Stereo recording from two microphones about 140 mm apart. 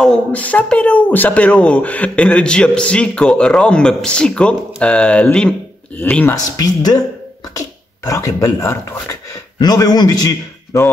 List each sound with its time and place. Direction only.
0.0 s speech: 10° left (ahead or behind)
6.3 s a man's voice: 25° left (ahead or behind)